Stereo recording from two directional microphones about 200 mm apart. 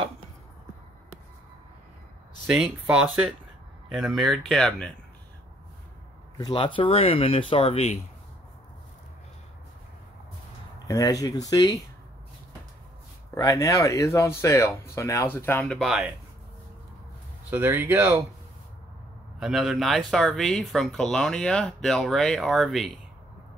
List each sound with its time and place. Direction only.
2.4 s speech: 5° right (ahead or behind)
6.3 s speech: 20° left (ahead or behind)
10.9 s speech: 20° left (ahead or behind)
13.3 s speech: 15° left (ahead or behind); by 16.1 s centre (ahead or behind)
17.5 s speech: 10° right (ahead or behind)
19.4 s speech: centre (ahead or behind)